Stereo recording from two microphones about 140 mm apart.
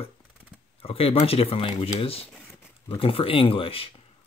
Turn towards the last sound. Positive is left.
turn(degrees=40)  # may be behind; listen again after turning